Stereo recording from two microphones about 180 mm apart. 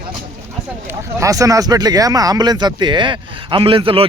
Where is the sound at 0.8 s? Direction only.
15° right (ahead or behind).